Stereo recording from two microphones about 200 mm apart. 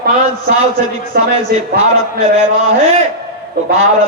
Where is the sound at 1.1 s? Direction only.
50° right (ahead or behind).